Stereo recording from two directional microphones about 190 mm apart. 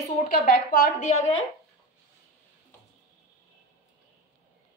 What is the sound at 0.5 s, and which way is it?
Speech, 50° left (ahead or behind).